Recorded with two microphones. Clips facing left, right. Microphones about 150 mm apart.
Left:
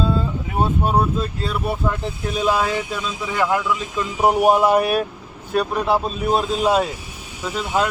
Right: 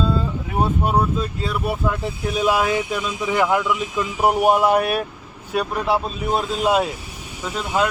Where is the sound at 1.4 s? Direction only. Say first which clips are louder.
Even; centre (ahead or behind).